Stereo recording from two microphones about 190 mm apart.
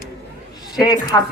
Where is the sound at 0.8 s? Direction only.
20° left (ahead or behind).